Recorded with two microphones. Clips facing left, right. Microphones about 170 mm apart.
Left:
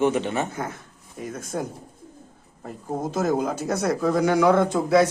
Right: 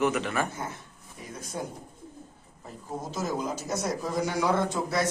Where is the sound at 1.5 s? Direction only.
60° left (ahead or behind).